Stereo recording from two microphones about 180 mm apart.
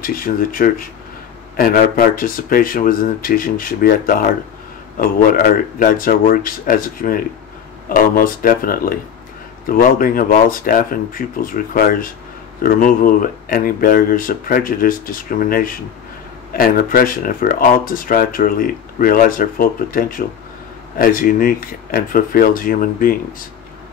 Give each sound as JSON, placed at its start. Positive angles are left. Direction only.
{"t": 0.0, "sound": "speech", "side_deg": 50}